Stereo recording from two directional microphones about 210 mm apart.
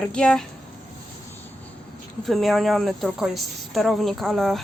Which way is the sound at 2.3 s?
Centre (ahead or behind).